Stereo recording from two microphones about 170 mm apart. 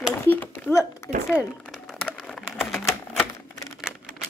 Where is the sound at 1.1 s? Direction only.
45° right (ahead or behind).